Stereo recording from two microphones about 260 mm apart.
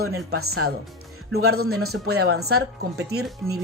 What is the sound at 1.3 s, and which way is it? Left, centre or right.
Speech, right.